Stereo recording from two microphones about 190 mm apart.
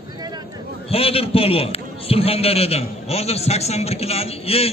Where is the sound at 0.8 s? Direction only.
30° left (ahead or behind).